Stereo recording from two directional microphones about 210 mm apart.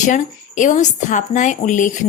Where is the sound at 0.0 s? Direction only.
40° left (ahead or behind).